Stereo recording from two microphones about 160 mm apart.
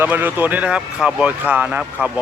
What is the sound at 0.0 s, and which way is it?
Speech, 10° right (ahead or behind).